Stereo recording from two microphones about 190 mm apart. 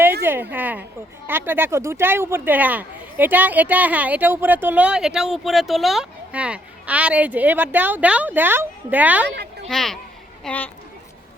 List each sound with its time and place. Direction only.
0.2 s a woman's voice: 10° right (ahead or behind)
9.2 s speech: 65° right (ahead or behind)
9.6 s speech: centre (ahead or behind)